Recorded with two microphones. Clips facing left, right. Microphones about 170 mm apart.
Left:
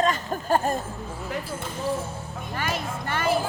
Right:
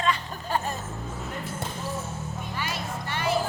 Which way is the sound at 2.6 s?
50° left (ahead or behind).